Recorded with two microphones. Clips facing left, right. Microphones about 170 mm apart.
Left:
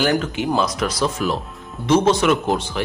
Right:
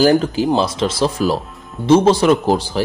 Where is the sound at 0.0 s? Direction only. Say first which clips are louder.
Right 6 dB; 35° right (ahead or behind).